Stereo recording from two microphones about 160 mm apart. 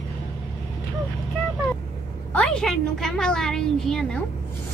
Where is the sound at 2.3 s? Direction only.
5° left (ahead or behind).